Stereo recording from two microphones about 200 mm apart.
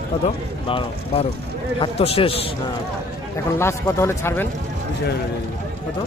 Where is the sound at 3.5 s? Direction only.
15° left (ahead or behind).